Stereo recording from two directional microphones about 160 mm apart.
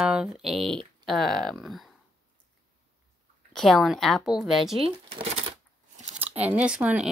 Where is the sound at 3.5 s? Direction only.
Centre (ahead or behind).